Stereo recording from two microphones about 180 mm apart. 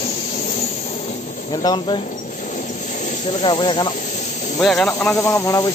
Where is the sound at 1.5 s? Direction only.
25° left (ahead or behind).